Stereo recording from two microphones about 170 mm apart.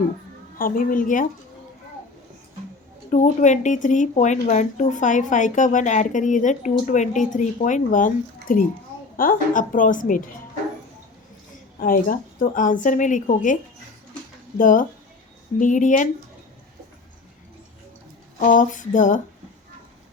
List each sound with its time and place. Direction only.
0.6 s speech: 55° left (ahead or behind)
3.1 s speech: 45° left (ahead or behind)
11.8 s speech: 55° left (ahead or behind)
14.6 s speech: 50° left (ahead or behind)
18.3 s speech: 50° left (ahead or behind)